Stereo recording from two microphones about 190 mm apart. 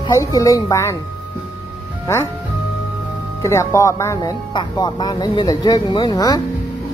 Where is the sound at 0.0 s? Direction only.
20° left (ahead or behind).